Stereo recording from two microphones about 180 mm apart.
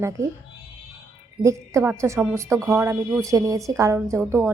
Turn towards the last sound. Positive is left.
turn(degrees=-15)  # may be behind; listen again after turning